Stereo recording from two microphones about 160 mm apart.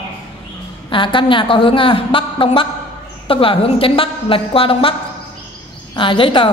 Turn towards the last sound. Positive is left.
turn(degrees=30)  # may be behind; listen again after turning